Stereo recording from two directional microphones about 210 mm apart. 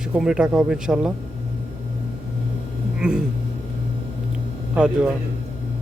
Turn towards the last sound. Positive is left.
turn(degrees=-5)  # may be behind; listen again after turning